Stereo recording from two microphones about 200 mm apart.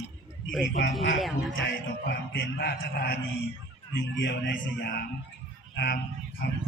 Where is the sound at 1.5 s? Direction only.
60° left (ahead or behind).